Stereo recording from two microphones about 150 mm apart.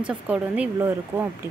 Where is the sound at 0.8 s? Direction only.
20° right (ahead or behind).